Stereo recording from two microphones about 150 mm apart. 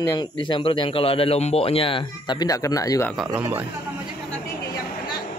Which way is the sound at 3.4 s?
15° right (ahead or behind).